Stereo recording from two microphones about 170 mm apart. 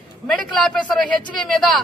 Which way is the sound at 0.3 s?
5° left (ahead or behind).